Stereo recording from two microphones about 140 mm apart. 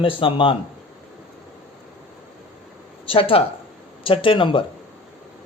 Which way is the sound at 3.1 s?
40° left (ahead or behind).